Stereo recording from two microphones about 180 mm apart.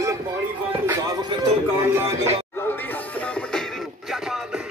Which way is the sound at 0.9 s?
20° right (ahead or behind).